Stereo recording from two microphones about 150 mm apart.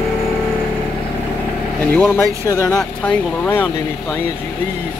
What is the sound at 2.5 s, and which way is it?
Speech, 20° left (ahead or behind).